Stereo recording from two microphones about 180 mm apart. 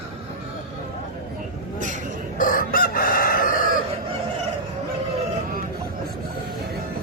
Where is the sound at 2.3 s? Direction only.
50° left (ahead or behind).